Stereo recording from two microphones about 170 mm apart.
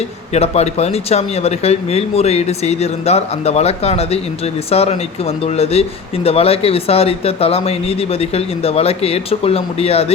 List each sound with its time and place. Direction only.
0.3 s speech: 40° left (ahead or behind)